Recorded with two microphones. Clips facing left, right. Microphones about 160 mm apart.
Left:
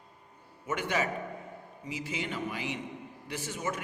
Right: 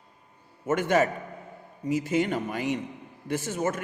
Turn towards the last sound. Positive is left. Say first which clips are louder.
# right 7 dB
turn(degrees=-45)  # may be behind; listen again after turning